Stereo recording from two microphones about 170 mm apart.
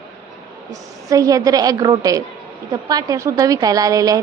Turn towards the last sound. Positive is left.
turn(degrees=-20)  # may be behind; listen again after turning